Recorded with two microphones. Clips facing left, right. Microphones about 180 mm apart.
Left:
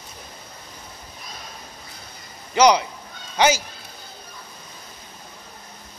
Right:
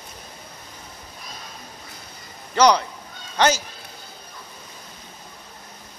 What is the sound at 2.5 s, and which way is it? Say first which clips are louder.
Speech: left 1 dB; 15° left (ahead or behind).